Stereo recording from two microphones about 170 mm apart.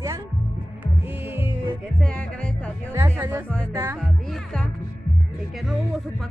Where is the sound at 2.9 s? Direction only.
15° right (ahead or behind).